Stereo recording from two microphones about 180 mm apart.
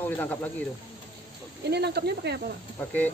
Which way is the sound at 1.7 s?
65° right (ahead or behind).